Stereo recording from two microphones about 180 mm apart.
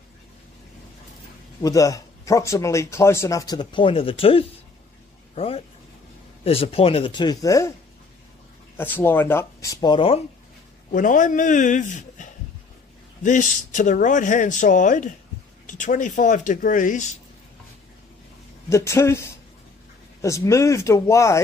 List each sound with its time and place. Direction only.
1.6 s speech: 20° left (ahead or behind)
8.7 s speech: 10° left (ahead or behind); by 10.2 s 30° left (ahead or behind)
10.9 s speech: 45° left (ahead or behind)
18.7 s speech: 15° left (ahead or behind)